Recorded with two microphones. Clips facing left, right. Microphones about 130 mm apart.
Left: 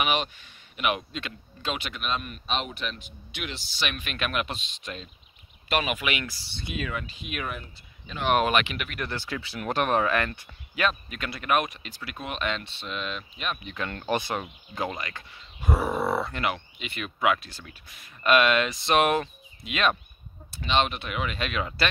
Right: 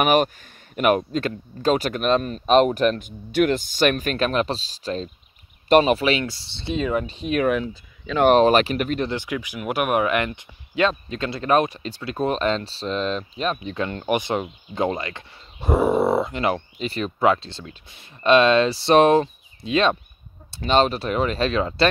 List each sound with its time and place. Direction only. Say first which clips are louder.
0.0 s speech: right 9 dB; 45° right (ahead or behind)
7.4 s speech: right 15 dB; 80° right
8.4 s speech: right 8 dB; 35° right (ahead or behind)
9.0 s speech: right 7 dB; 15° right (ahead or behind); by 13.8 s 35° right (ahead or behind)
13.8 s speech: right 4 dB; 20° right (ahead or behind)
16.5 s speech: right 10 dB; 35° right (ahead or behind)